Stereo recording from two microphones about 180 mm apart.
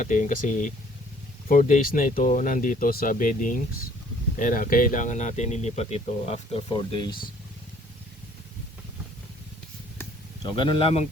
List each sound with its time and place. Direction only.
0.0 s speech: 45° left (ahead or behind); by 7.2 s 25° left (ahead or behind)
10.5 s speech: 30° left (ahead or behind)